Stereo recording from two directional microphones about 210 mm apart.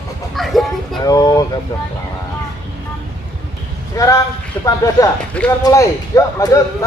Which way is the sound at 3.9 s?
15° left (ahead or behind).